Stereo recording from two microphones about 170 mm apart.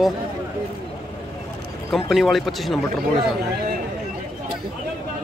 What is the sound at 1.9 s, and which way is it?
Speech, centre (ahead or behind).